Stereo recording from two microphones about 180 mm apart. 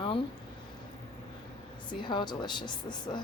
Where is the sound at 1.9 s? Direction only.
25° left (ahead or behind).